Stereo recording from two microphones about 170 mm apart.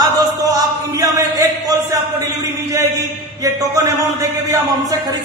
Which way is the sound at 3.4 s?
20° right (ahead or behind).